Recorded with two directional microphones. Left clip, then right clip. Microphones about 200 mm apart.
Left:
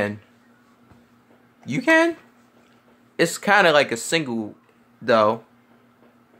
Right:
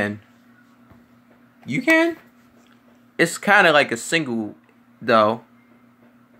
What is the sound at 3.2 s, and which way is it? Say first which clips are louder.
Speech: right 2 dB; 5° left (ahead or behind).